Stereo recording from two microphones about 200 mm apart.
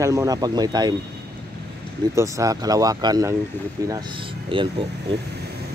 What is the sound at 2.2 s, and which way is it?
Speech, 15° right (ahead or behind).